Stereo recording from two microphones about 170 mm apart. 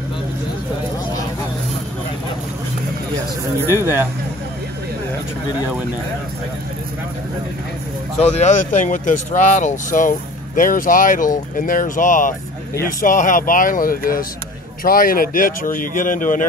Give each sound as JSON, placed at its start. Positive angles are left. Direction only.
{"t": 3.6, "sound": "speech", "side_deg": -15}
{"t": 8.2, "sound": "speech", "side_deg": 45}